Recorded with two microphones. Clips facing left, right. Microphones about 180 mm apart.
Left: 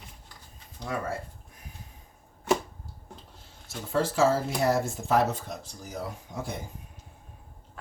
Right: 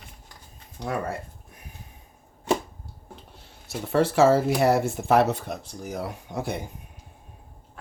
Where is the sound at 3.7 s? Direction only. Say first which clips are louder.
Right 5 dB; 65° right (ahead or behind).